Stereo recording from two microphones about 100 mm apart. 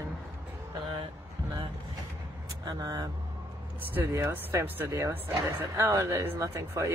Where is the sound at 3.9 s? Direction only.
25° right (ahead or behind).